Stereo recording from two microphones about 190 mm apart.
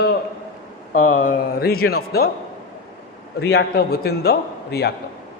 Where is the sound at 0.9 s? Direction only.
45° left (ahead or behind).